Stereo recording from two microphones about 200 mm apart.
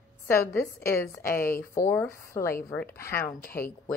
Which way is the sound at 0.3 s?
10° left (ahead or behind).